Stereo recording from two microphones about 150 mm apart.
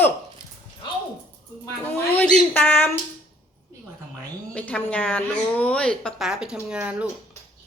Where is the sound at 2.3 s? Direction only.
15° left (ahead or behind).